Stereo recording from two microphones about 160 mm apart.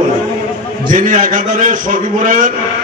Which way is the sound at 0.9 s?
55° right (ahead or behind).